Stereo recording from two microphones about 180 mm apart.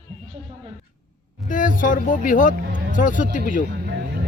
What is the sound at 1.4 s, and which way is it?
Speech, 45° left (ahead or behind).